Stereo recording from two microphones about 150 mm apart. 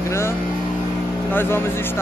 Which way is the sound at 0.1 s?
15° left (ahead or behind).